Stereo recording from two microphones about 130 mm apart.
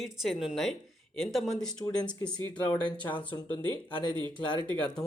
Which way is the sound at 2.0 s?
35° left (ahead or behind).